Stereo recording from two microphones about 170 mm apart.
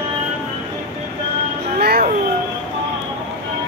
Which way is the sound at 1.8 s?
65° right (ahead or behind).